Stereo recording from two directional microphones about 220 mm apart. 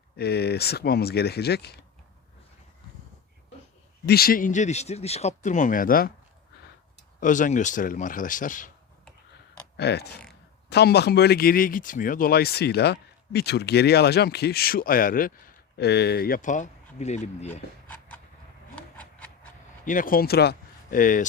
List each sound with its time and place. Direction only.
0.2 s speech: 45° left (ahead or behind)
4.0 s speech: 45° left (ahead or behind)
7.2 s speech: 35° left (ahead or behind)
9.7 s speech: 50° left (ahead or behind); by 17.5 s 30° left (ahead or behind)
17.5 s a sound: 10° left (ahead or behind)
19.8 s speech: 35° left (ahead or behind)